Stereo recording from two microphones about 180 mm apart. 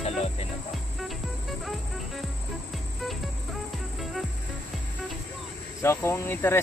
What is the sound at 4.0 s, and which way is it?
Music, centre (ahead or behind).